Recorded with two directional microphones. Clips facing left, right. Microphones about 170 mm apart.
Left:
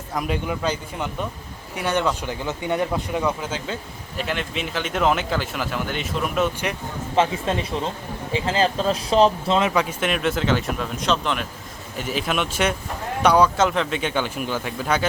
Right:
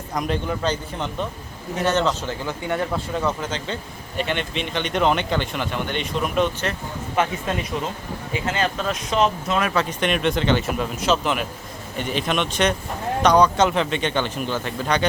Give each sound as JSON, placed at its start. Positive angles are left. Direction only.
{"t": 0.1, "sound": "speech", "side_deg": 5}
{"t": 7.2, "sound": "speech", "side_deg": 25}
{"t": 9.7, "sound": "speech", "side_deg": 5}